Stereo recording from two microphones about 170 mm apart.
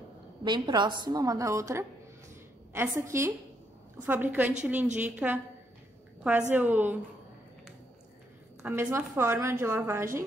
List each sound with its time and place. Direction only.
0.4 s a woman's voice: 25° right (ahead or behind); by 5.4 s 10° right (ahead or behind)
6.5 s a woman's voice: 10° right (ahead or behind)
8.6 s a woman's voice: 15° right (ahead or behind)